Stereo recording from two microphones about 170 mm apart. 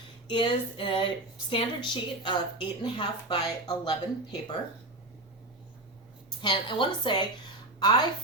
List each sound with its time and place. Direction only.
0.3 s a woman's voice: 30° left (ahead or behind)
6.4 s a woman's voice: 25° left (ahead or behind)